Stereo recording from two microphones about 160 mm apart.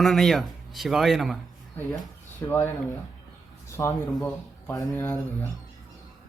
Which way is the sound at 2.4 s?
15° left (ahead or behind).